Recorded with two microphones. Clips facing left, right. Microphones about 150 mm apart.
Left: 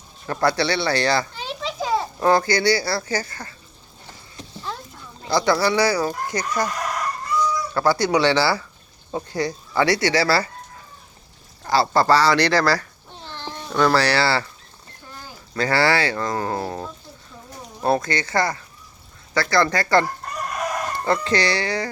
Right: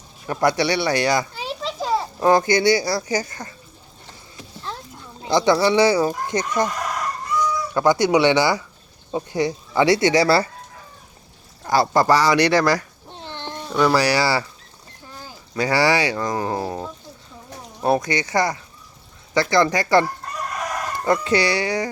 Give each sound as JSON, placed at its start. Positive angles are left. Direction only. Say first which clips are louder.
{"t": 0.3, "sound": "speech", "louder": "right 1 dB", "side_deg": -15}
{"t": 1.5, "sound": "children playing", "louder": "right 1 dB", "side_deg": 0}
{"t": 2.2, "sound": "speech", "louder": "right 2 dB", "side_deg": -20}
{"t": 5.2, "sound": "speech", "louder": "right 2 dB", "side_deg": -20}
{"t": 11.6, "sound": "speech", "louder": "right 1 dB", "side_deg": -15}
{"t": 15.5, "sound": "speech", "louder": "right 1 dB", "side_deg": -15}